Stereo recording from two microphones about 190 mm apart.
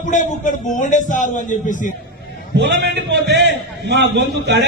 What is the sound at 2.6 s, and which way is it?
A man's voice, 65° right (ahead or behind).